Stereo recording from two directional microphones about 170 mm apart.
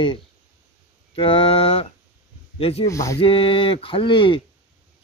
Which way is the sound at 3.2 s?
35° left (ahead or behind).